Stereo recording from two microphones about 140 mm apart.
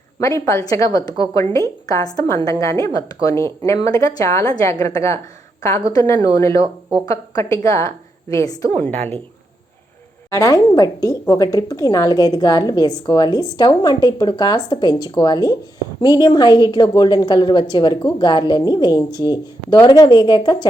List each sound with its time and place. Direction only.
0.2 s a woman's voice: 20° left (ahead or behind)
10.2 s a woman's voice: 20° left (ahead or behind)